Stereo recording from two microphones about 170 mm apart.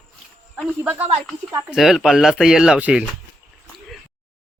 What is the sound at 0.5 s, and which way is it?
Speech, centre (ahead or behind).